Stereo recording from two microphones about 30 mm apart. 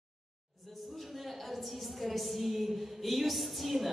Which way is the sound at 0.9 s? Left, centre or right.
Centre.